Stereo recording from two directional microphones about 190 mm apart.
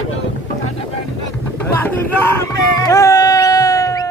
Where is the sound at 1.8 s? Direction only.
10° left (ahead or behind).